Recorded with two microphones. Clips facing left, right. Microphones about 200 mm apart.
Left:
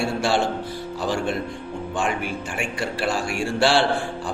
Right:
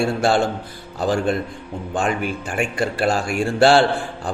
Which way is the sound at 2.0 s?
40° right (ahead or behind).